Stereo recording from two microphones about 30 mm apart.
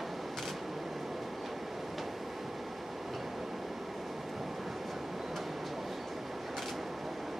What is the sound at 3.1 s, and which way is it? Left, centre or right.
Train, centre.